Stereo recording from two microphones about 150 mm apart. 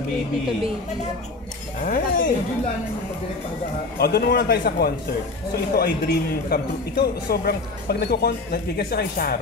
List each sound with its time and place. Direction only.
1.8 s speech: 65° left (ahead or behind)
4.0 s a man's voice: 90° left